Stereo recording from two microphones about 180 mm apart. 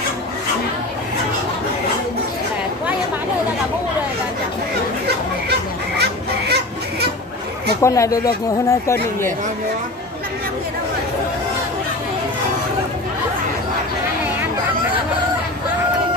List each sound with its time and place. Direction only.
5.9 s children playing: 65° right (ahead or behind)
7.8 s speech: 15° left (ahead or behind)